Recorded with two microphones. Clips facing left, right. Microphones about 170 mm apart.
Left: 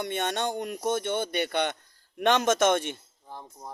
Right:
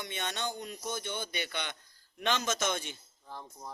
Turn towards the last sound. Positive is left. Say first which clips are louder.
# left 3 dB
turn(degrees=15)  # may be behind; listen again after turning